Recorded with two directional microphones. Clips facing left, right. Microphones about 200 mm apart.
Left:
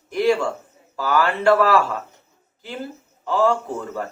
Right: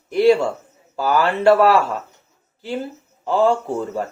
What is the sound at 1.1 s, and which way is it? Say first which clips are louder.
Speech: right 2 dB; 30° right (ahead or behind).